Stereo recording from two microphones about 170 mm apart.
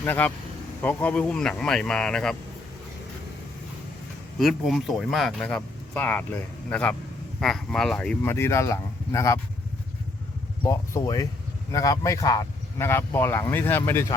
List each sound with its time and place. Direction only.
0.0 s speech: 10° left (ahead or behind)
4.4 s speech: centre (ahead or behind); by 9.4 s 15° left (ahead or behind)
10.6 s speech: 20° left (ahead or behind)